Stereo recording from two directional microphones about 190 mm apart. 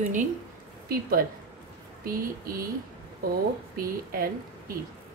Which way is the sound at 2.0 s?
50° right (ahead or behind).